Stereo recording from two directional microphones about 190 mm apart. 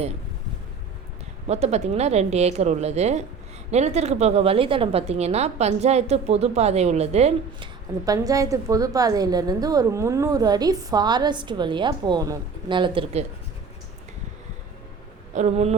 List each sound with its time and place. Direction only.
1.5 s a woman's voice: 35° right (ahead or behind)
8.0 s a woman's voice: 20° right (ahead or behind)
15.4 s a woman's voice: 35° right (ahead or behind)